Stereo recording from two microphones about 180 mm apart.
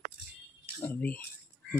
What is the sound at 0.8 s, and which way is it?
Speech, 10° left (ahead or behind).